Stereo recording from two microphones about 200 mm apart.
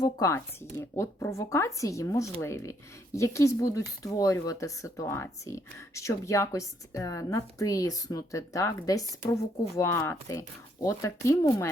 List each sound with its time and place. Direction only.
0.0 s speech: 15° left (ahead or behind)